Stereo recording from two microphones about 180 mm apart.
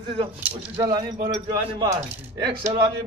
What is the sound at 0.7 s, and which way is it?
Speech, 20° right (ahead or behind).